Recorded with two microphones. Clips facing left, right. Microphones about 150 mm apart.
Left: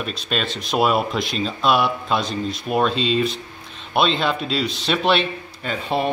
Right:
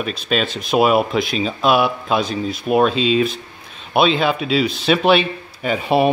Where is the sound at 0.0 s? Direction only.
5° right (ahead or behind).